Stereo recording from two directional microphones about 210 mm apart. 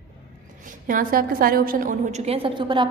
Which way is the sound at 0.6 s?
40° right (ahead or behind).